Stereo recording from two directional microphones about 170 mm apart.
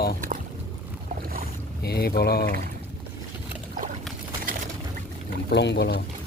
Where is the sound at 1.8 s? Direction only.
70° left (ahead or behind).